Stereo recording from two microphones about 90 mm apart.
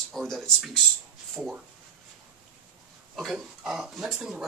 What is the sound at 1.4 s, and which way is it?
Speech, 5° right (ahead or behind).